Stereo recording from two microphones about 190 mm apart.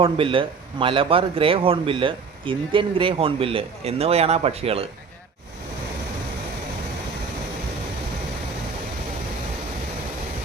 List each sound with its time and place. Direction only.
0.0 s a man's voice: 30° right (ahead or behind)